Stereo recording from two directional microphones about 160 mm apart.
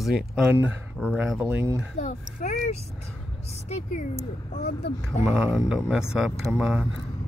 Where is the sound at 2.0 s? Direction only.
50° left (ahead or behind).